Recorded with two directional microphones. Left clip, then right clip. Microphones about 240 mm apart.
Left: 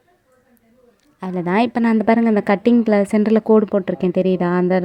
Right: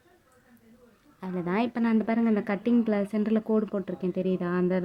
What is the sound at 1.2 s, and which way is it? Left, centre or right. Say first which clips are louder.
A woman's voice: left 11 dB; left.